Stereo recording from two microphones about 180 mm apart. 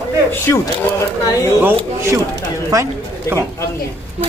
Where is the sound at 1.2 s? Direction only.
20° left (ahead or behind).